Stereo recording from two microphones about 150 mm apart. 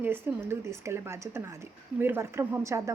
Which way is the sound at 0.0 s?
15° right (ahead or behind).